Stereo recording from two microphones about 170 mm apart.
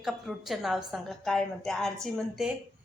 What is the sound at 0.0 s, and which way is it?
A woman's voice, centre (ahead or behind).